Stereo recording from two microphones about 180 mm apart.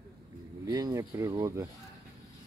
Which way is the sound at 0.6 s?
20° right (ahead or behind).